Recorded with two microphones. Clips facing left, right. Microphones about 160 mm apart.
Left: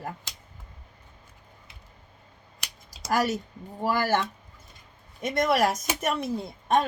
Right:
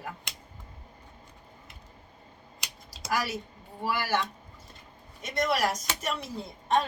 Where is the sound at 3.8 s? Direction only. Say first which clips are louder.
Left 4 dB; 45° left (ahead or behind).